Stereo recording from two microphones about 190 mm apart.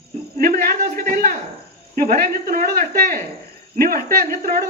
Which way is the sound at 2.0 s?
50° right (ahead or behind).